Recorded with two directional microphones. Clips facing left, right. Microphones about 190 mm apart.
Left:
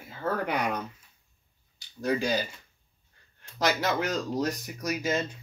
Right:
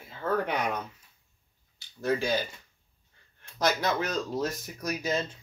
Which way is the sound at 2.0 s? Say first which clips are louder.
Even; 15° left (ahead or behind).